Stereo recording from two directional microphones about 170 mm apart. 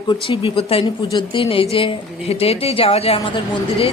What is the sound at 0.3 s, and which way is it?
Speech, 35° left (ahead or behind).